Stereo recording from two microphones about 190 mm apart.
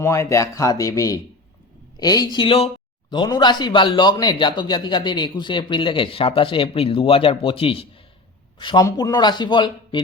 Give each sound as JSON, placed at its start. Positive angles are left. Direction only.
{"t": 0.0, "sound": "speech", "side_deg": 15}